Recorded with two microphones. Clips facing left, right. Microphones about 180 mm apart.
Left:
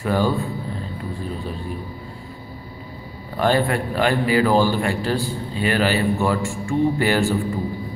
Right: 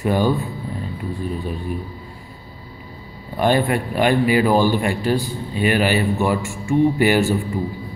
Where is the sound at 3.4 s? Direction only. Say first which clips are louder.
Right 1 dB; 15° right (ahead or behind).